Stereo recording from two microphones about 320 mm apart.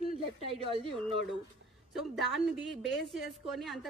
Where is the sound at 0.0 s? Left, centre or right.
Centre.